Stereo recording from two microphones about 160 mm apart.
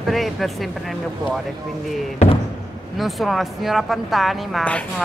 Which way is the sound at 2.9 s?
Centre (ahead or behind).